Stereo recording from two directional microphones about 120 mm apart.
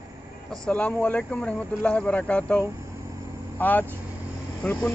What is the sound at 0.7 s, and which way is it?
Speech, 10° left (ahead or behind).